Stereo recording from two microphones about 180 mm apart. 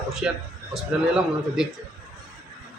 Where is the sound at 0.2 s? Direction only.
5° right (ahead or behind).